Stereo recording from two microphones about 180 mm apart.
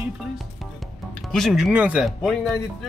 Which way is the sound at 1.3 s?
Centre (ahead or behind).